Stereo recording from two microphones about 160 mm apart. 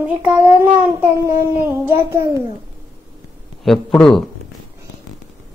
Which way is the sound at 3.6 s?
Centre (ahead or behind).